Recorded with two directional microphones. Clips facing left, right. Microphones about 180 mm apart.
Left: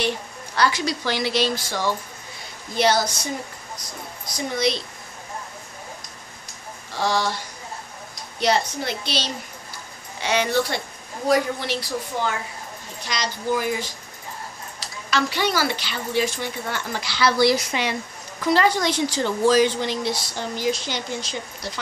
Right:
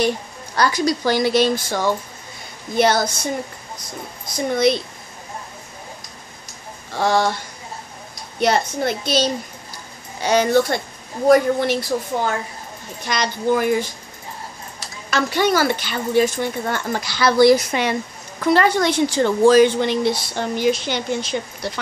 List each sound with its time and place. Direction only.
0.6 s a woman's voice: 45° right (ahead or behind)
4.6 s a woman's voice: 55° right (ahead or behind)
7.0 s a woman's voice: 55° right (ahead or behind)
8.4 s a woman's voice: 50° right (ahead or behind)